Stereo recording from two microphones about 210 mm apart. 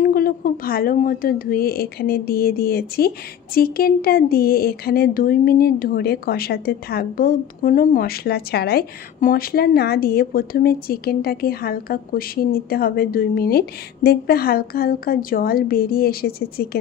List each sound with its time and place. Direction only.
0.0 s speech: 45° left (ahead or behind)